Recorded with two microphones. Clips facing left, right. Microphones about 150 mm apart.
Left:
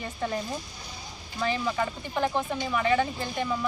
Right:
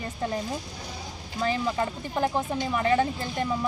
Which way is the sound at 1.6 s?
35° right (ahead or behind).